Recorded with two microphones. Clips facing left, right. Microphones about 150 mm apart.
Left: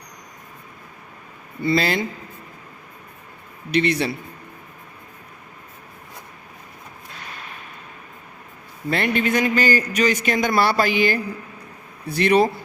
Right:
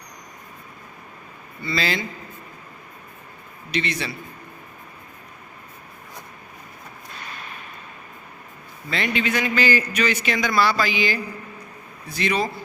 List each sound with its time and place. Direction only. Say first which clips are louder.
1.6 s a man's voice: left 6 dB; 55° left (ahead or behind)
3.7 s a man's voice: left 7 dB; 55° left (ahead or behind)
8.9 s a man's voice: left 4 dB; 50° left (ahead or behind)